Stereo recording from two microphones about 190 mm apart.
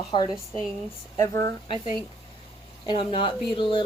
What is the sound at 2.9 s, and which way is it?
Speech, 25° left (ahead or behind).